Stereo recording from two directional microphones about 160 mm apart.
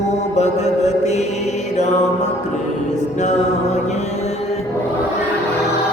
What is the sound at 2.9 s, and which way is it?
Music, 45° left (ahead or behind).